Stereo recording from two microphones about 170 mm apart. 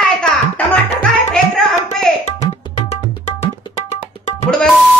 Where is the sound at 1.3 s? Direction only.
5° left (ahead or behind).